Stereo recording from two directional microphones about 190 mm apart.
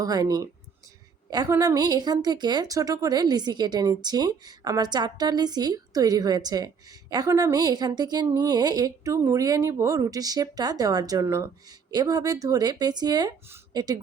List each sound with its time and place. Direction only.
0.0 s a woman's voice: 20° right (ahead or behind)